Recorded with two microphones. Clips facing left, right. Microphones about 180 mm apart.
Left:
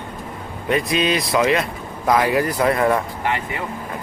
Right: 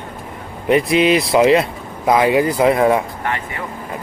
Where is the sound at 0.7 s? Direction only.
25° right (ahead or behind).